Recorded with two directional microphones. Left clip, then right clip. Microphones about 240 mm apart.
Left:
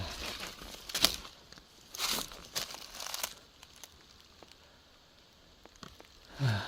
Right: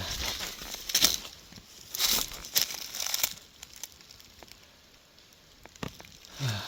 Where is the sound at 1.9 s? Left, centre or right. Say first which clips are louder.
Right 6 dB; right.